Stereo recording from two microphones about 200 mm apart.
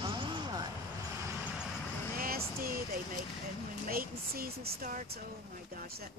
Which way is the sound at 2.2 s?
45° right (ahead or behind).